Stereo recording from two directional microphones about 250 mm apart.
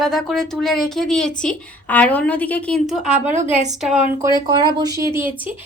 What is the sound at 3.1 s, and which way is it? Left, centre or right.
Speech, right.